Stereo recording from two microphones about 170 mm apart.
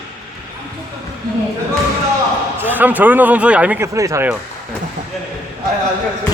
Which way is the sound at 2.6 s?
10° right (ahead or behind).